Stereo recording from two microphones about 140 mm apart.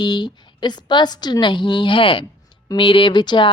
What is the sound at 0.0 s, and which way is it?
A woman's voice, 30° left (ahead or behind).